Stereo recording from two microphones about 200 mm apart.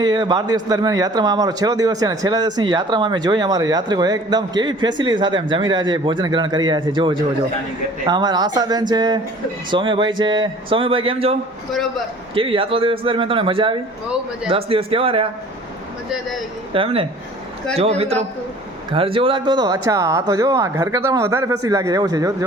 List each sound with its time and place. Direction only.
0.0 s speech: 20° right (ahead or behind)
16.7 s a man's voice: 25° right (ahead or behind)